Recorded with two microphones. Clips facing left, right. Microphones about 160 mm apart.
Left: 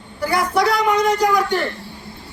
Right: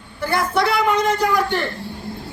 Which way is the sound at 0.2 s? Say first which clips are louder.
Left 1 dB; 5° right (ahead or behind).